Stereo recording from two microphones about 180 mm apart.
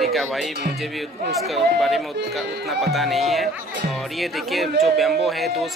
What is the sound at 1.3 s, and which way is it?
Speech, centre (ahead or behind).